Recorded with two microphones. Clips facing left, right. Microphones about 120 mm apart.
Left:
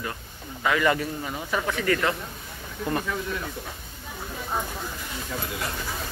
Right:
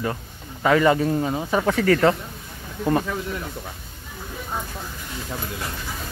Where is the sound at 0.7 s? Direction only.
30° right (ahead or behind).